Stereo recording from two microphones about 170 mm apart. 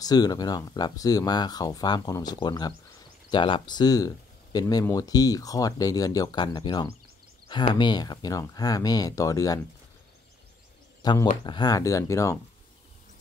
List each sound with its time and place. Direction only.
0.0 s speech: 20° left (ahead or behind)
11.0 s speech: 25° left (ahead or behind)